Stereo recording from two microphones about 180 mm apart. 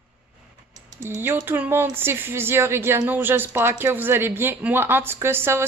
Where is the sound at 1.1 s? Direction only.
10° right (ahead or behind).